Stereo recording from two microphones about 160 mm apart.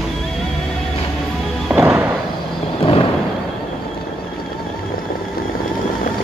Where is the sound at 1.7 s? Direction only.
10° right (ahead or behind).